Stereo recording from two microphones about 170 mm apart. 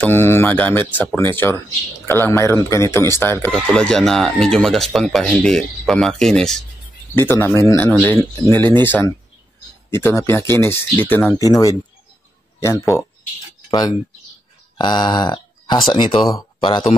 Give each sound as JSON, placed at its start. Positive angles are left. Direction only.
{"t": 0.0, "sound": "speech", "side_deg": 15}
{"t": 12.5, "sound": "speech", "side_deg": 15}
{"t": 14.8, "sound": "speech", "side_deg": 25}